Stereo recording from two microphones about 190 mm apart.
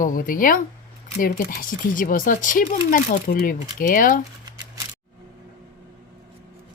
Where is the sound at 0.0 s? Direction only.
45° left (ahead or behind).